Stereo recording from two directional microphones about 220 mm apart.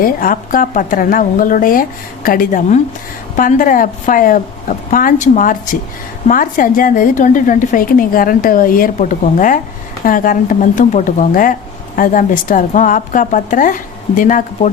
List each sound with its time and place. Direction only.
0.0 s a woman's voice: 40° left (ahead or behind)